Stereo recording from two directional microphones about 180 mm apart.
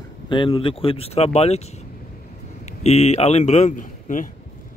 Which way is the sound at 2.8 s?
35° left (ahead or behind).